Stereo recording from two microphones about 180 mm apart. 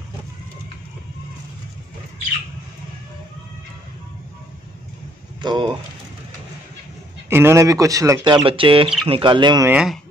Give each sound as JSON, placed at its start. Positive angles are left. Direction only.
{"t": 5.4, "sound": "speech", "side_deg": -25}
{"t": 7.2, "sound": "speech", "side_deg": -15}
{"t": 9.7, "sound": "speech", "side_deg": -5}